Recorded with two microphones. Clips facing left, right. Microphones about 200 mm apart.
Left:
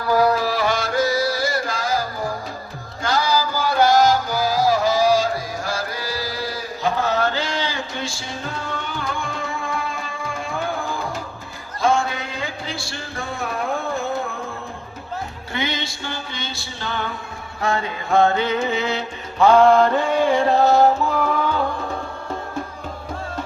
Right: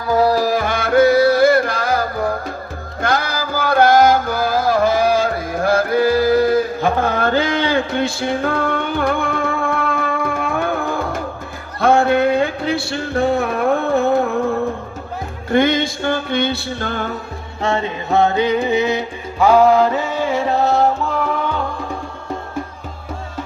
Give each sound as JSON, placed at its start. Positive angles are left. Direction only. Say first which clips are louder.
{"t": 0.1, "sound": "music", "louder": "right 2 dB", "side_deg": -25}
{"t": 0.3, "sound": "music", "louder": "right 3 dB", "side_deg": -45}
{"t": 11.8, "sound": "a sound", "louder": "right 7 dB", "side_deg": -60}
{"t": 15.4, "sound": "music", "louder": "right 13 dB", "side_deg": -50}
{"t": 17.6, "sound": "music", "louder": "right 3 dB", "side_deg": -25}